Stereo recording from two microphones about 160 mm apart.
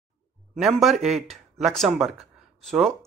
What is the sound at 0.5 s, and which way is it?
A woman's voice, centre (ahead or behind).